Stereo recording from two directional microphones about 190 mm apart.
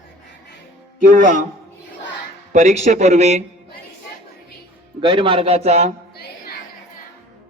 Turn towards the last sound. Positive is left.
turn(degrees=55)  # may be behind; listen again after turning